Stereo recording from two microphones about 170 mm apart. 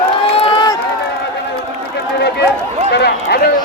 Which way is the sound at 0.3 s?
25° left (ahead or behind).